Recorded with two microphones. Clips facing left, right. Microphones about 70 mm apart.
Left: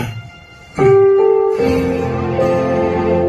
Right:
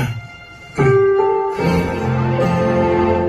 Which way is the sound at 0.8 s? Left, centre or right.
Right.